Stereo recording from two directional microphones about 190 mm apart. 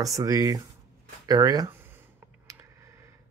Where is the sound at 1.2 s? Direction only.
20° right (ahead or behind).